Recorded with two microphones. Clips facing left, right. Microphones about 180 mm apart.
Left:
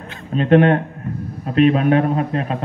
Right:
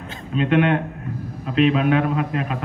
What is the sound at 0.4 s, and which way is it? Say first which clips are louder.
A man's voice: left 5 dB; 45° left (ahead or behind).